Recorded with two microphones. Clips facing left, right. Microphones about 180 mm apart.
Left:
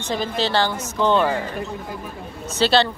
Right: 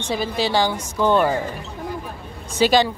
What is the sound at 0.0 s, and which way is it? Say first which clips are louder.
A woman's voice: right 1 dB; 10° right (ahead or behind).